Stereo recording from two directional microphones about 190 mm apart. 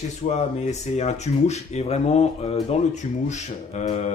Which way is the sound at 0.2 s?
35° left (ahead or behind).